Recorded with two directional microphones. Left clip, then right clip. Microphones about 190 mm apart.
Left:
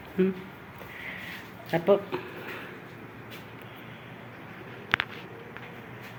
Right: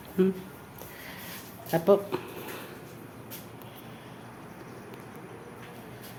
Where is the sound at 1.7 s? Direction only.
20° right (ahead or behind).